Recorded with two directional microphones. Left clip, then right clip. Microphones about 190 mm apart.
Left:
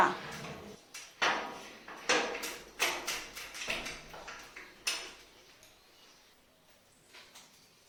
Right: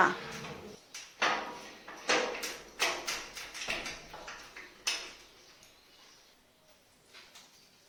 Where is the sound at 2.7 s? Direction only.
Centre (ahead or behind).